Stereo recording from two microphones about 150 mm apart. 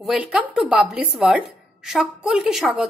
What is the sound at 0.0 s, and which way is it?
A woman's voice, 5° right (ahead or behind).